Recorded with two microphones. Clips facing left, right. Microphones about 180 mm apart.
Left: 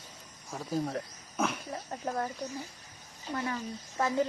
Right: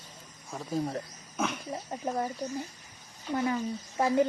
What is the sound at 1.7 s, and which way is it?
Speech, 15° right (ahead or behind).